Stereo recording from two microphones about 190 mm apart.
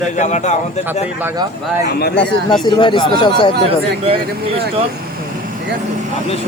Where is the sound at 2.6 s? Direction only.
25° left (ahead or behind).